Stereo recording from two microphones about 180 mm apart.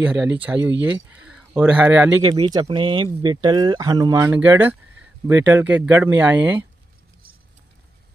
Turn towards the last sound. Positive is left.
turn(degrees=-10)  # may be behind; listen again after turning